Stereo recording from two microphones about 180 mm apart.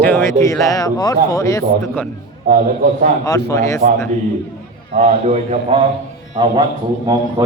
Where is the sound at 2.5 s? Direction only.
50° right (ahead or behind).